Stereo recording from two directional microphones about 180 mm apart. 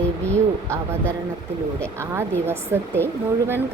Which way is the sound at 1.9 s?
15° right (ahead or behind).